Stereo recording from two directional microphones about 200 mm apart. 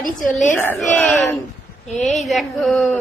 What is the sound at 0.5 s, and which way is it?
A woman's voice, 10° left (ahead or behind).